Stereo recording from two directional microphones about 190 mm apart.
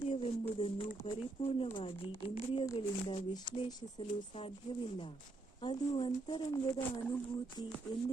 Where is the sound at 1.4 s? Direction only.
35° left (ahead or behind).